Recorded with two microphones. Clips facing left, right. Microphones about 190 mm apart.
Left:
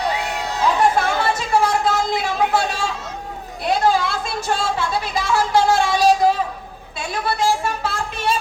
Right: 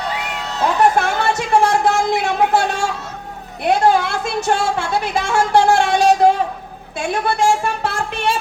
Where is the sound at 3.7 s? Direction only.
60° right (ahead or behind).